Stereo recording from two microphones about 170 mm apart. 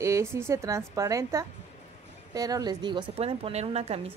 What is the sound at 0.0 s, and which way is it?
A woman's voice, 15° right (ahead or behind).